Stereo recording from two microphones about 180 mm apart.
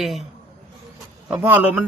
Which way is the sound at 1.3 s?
10° right (ahead or behind).